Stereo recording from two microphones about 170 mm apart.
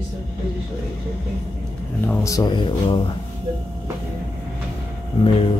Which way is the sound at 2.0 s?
10° left (ahead or behind).